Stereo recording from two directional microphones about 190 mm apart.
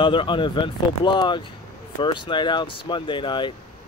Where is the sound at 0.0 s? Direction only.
25° left (ahead or behind).